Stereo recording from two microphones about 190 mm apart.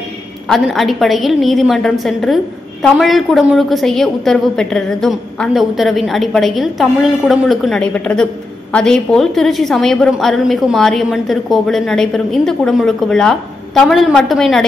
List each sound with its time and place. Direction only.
0.5 s a woman's voice: centre (ahead or behind)